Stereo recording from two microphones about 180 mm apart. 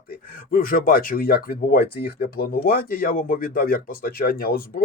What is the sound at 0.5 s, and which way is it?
Speech, 50° left (ahead or behind).